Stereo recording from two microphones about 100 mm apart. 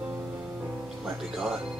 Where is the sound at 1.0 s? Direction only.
5° right (ahead or behind).